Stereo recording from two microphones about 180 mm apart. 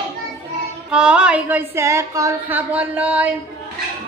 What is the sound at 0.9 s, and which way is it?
A woman's voice, 5° right (ahead or behind).